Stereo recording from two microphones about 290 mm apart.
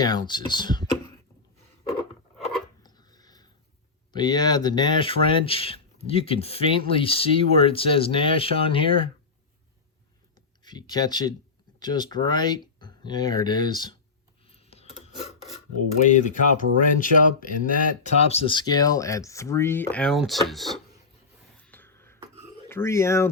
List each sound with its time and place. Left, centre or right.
0.0 s speech: centre
2.8 s a sound: centre
4.1 s speech: centre
10.6 s speech: centre
14.4 s filing: left
16.0 s speech: left; by 20.8 s centre
21.6 s beatboxing: centre
22.7 s speech: centre